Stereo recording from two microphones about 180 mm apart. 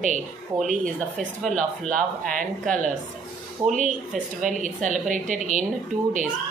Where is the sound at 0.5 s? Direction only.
20° right (ahead or behind).